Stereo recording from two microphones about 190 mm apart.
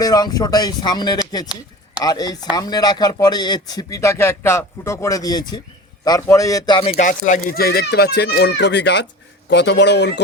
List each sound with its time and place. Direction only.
0.0 s speech: 20° left (ahead or behind)
6.9 s speech: 45° left (ahead or behind); by 10.2 s 60° left (ahead or behind)